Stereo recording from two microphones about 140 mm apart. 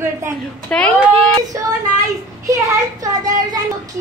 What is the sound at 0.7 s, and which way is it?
Speech, 10° left (ahead or behind).